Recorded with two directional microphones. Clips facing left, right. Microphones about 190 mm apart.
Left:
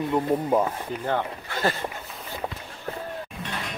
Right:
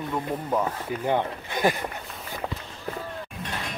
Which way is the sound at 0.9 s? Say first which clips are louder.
Right 2 dB; 10° right (ahead or behind).